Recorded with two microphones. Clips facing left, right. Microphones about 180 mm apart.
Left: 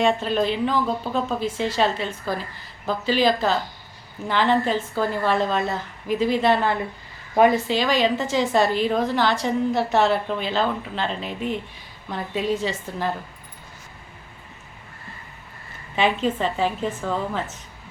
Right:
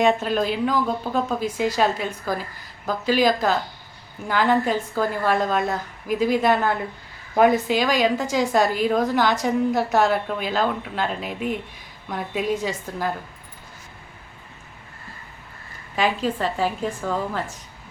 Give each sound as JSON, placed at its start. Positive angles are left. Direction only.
{"t": 0.2, "sound": "a woman's voice", "side_deg": -5}
{"t": 16.0, "sound": "a woman's voice", "side_deg": -10}